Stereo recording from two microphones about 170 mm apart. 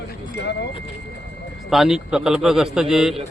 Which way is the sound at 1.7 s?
Centre (ahead or behind).